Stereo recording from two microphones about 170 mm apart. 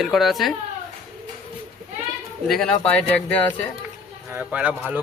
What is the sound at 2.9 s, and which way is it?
Speech, 10° left (ahead or behind).